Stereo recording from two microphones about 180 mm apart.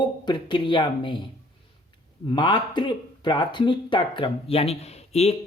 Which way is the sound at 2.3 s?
25° left (ahead or behind).